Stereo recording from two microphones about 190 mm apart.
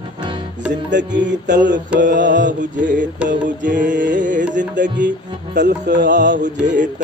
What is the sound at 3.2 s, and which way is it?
Mantra, 45° right (ahead or behind).